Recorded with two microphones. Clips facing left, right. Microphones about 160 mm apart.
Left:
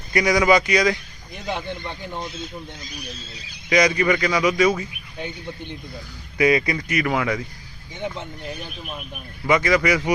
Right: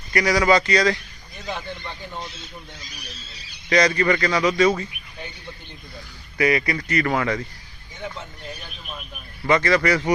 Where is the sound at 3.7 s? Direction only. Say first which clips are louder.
Even; 15° left (ahead or behind).